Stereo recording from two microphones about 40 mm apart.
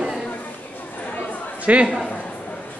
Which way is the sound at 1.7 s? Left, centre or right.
Right.